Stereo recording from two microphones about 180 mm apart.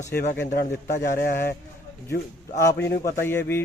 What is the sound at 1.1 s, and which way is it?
Speech, 50° left (ahead or behind).